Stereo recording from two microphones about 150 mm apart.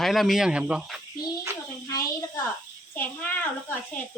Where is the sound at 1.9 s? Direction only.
20° left (ahead or behind).